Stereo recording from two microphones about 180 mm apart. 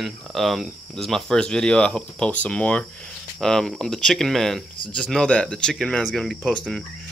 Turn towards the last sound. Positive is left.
turn(degrees=0)  # may be behind; listen again after turning